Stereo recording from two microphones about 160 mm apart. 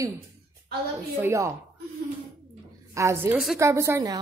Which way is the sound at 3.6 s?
20° right (ahead or behind).